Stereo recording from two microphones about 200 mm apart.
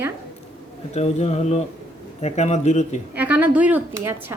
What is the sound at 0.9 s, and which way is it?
Speech, 30° left (ahead or behind).